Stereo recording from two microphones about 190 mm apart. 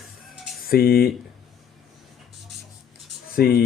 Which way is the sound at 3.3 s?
50° left (ahead or behind).